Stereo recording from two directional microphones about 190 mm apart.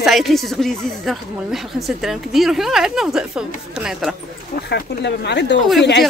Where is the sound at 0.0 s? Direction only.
Centre (ahead or behind).